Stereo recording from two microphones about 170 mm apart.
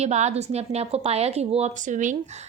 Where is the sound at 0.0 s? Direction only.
40° right (ahead or behind).